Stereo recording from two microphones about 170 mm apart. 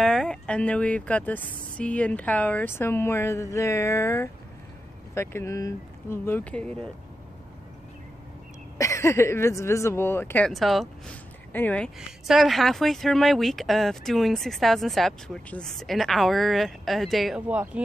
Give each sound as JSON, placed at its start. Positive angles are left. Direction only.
{"t": 0.0, "sound": "speech", "side_deg": 5}
{"t": 8.7, "sound": "speech", "side_deg": 15}
{"t": 10.5, "sound": "speech", "side_deg": 0}